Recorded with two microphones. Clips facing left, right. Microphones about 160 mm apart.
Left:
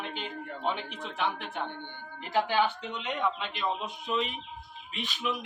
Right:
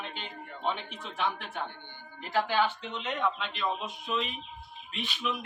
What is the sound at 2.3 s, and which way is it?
Speech, 15° left (ahead or behind).